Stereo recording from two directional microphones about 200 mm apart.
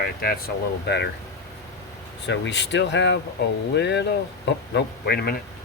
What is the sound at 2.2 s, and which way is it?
Speech, 60° left (ahead or behind).